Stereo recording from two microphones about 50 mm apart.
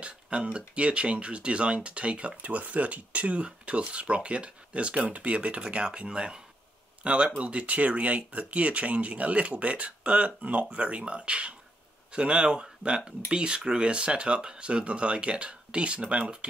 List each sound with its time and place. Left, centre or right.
0.0 s speech: right